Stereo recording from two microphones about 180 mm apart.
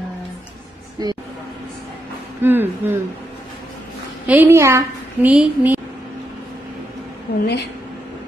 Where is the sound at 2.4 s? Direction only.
10° right (ahead or behind).